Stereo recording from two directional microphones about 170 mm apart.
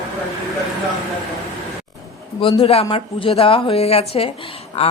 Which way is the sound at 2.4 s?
35° left (ahead or behind).